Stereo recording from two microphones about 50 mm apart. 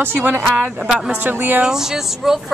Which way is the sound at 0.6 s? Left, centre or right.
Right.